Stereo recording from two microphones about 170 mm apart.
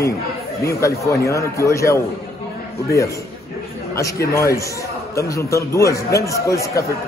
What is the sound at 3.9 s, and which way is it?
A man's voice, 20° left (ahead or behind).